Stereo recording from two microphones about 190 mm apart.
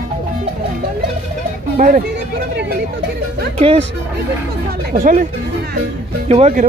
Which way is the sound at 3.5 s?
30° right (ahead or behind).